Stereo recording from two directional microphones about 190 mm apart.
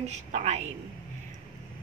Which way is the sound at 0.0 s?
35° right (ahead or behind).